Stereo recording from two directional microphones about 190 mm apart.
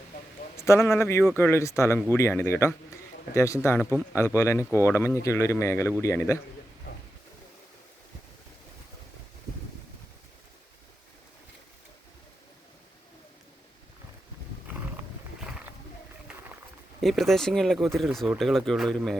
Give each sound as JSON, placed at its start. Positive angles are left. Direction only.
{"t": 0.5, "sound": "speech", "side_deg": 15}
{"t": 17.0, "sound": "speech", "side_deg": 0}